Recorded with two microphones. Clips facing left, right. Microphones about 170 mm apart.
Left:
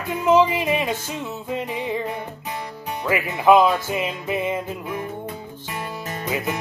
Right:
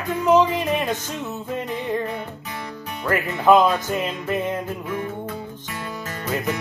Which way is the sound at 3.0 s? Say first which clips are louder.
Even; 10° left (ahead or behind).